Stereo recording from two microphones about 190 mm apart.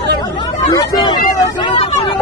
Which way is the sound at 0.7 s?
20° left (ahead or behind).